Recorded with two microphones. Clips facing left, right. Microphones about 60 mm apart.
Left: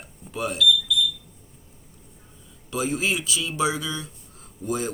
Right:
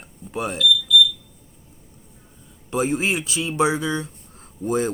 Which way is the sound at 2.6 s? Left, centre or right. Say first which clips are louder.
Right 3 dB; right.